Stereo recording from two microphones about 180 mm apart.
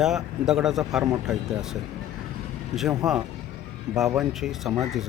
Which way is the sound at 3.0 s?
Centre (ahead or behind).